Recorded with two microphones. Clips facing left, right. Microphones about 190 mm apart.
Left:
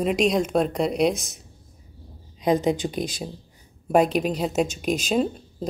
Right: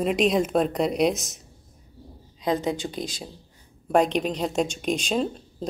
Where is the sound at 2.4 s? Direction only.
20° left (ahead or behind).